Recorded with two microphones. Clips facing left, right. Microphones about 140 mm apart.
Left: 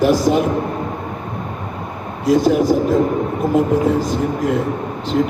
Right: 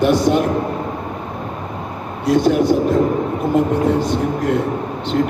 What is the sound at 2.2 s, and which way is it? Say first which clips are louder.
Speech: left 1 dB; centre (ahead or behind).